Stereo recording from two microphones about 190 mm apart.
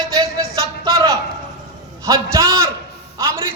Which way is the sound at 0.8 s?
20° right (ahead or behind).